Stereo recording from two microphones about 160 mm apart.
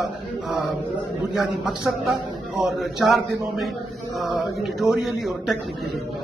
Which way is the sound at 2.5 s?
Centre (ahead or behind).